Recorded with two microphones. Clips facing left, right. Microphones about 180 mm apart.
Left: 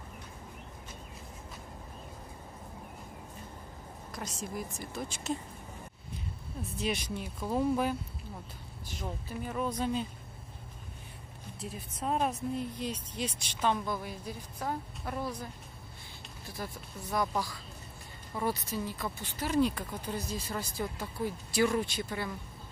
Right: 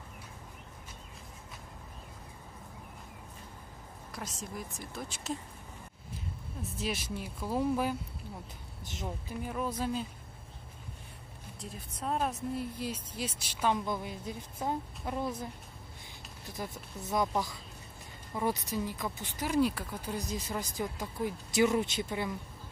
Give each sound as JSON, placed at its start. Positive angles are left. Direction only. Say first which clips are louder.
{"t": 4.1, "sound": "speech", "louder": "left 2 dB", "side_deg": 0}
{"t": 6.6, "sound": "speech", "louder": "left 2 dB", "side_deg": -5}
{"t": 9.0, "sound": "speech", "louder": "even", "side_deg": -5}
{"t": 11.6, "sound": "speech", "louder": "left 2 dB", "side_deg": 0}
{"t": 16.5, "sound": "speech", "louder": "right 1 dB", "side_deg": -20}